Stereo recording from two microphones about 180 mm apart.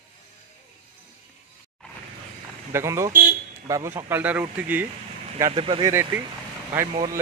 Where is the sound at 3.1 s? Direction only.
45° right (ahead or behind).